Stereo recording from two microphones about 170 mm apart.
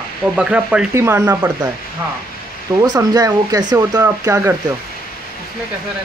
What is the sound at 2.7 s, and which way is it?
Speech, 20° right (ahead or behind).